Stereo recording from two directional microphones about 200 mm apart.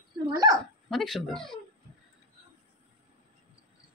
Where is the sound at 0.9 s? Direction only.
Centre (ahead or behind).